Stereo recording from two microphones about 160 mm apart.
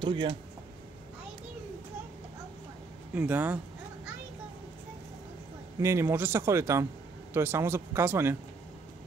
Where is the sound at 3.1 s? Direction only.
10° right (ahead or behind).